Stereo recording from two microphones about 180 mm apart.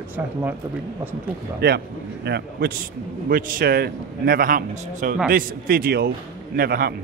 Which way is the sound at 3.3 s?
50° right (ahead or behind).